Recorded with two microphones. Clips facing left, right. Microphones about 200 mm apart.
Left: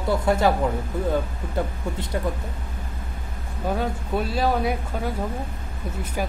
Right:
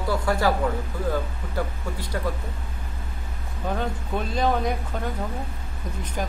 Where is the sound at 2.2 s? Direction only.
20° left (ahead or behind).